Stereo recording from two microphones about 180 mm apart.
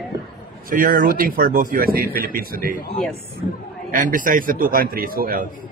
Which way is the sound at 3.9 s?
45° right (ahead or behind).